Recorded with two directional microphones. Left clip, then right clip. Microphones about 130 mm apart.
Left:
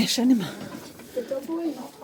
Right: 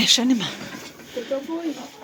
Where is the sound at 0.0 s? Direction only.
35° left (ahead or behind).